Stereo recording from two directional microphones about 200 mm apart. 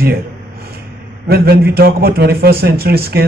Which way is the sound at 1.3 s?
50° right (ahead or behind).